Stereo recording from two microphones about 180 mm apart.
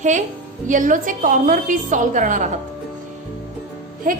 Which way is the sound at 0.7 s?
45° right (ahead or behind).